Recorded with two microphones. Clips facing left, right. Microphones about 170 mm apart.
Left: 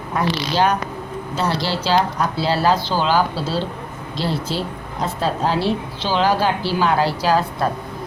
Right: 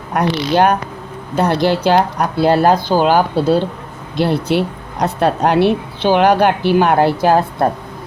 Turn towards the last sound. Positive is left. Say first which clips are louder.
# right 5 dB
turn(degrees=-55)  # may be behind; listen again after turning